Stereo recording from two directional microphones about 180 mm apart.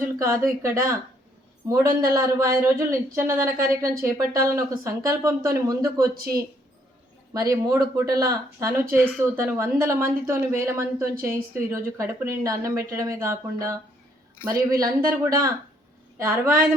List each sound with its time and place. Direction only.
0.2 s speech: 15° right (ahead or behind)
7.3 s speech: 20° right (ahead or behind)
9.0 s speech: 5° left (ahead or behind)
9.3 s speech: 15° right (ahead or behind)